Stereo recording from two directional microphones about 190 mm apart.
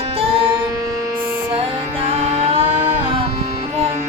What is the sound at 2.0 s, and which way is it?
Music, 30° right (ahead or behind).